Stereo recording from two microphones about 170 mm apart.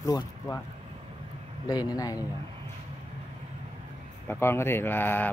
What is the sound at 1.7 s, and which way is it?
Speech, 20° left (ahead or behind).